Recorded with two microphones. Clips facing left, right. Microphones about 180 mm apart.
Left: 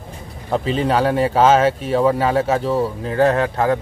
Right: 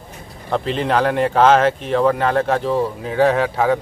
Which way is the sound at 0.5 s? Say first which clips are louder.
Left 1 dB; centre (ahead or behind).